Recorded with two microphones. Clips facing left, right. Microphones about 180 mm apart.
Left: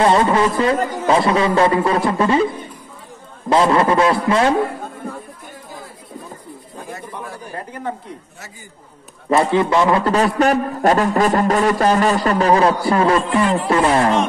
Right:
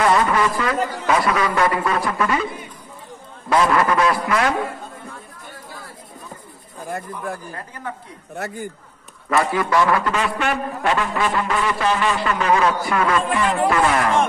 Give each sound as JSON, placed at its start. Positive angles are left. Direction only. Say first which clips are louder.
{"t": 0.0, "sound": "a man's voice", "louder": "left 3 dB", "side_deg": 30}
{"t": 3.4, "sound": "a man's voice", "louder": "left 3 dB", "side_deg": 25}
{"t": 6.9, "sound": "speech", "louder": "right 4 dB", "side_deg": -55}
{"t": 8.4, "sound": "speech", "louder": "right 12 dB", "side_deg": -60}
{"t": 9.3, "sound": "a man's voice", "louder": "left 4 dB", "side_deg": 25}
{"t": 10.0, "sound": "a man's voice", "louder": "left 7 dB", "side_deg": 40}